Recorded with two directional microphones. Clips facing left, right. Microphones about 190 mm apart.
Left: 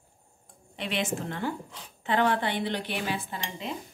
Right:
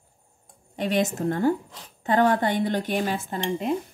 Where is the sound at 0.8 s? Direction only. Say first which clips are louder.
Right 7 dB; 45° right (ahead or behind).